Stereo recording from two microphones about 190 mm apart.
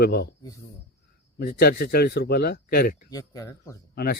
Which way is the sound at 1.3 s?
55° left (ahead or behind).